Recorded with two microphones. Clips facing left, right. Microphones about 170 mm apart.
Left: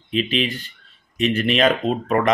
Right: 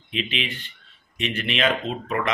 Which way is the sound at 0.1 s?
40° left (ahead or behind).